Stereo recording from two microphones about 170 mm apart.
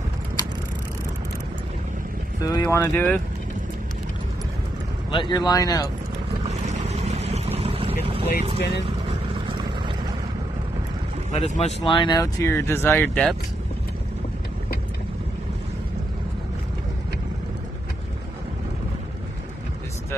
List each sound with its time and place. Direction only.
2.4 s speech: 20° left (ahead or behind)
5.1 s speech: 25° left (ahead or behind)
6.4 s vehicle: 40° right (ahead or behind)
8.5 s speech: 80° left
8.8 s vehicle: 30° right (ahead or behind)
11.3 s speech: 40° left (ahead or behind); by 13.4 s 5° left (ahead or behind)